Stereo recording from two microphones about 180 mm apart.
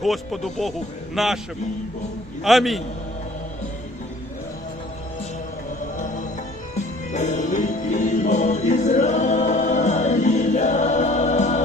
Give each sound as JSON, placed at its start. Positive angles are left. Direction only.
{"t": 0.0, "sound": "speech", "side_deg": 0}
{"t": 2.4, "sound": "speech", "side_deg": 0}
{"t": 7.1, "sound": "music", "side_deg": 40}